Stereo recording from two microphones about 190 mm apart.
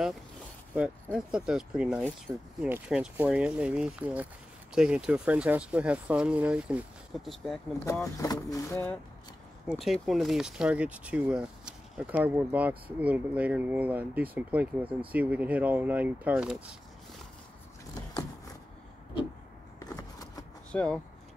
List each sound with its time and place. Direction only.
1.1 s speech: 5° right (ahead or behind)
2.7 s speech: 5° right (ahead or behind)
8.2 s speech: 20° left (ahead or behind)
9.7 s speech: centre (ahead or behind)
19.8 s vehicle: 20° left (ahead or behind)
20.7 s speech: 5° left (ahead or behind)